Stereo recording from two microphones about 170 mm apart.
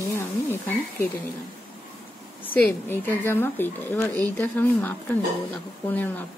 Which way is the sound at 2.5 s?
10° left (ahead or behind).